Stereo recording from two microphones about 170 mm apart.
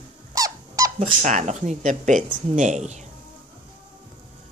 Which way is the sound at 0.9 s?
45° right (ahead or behind).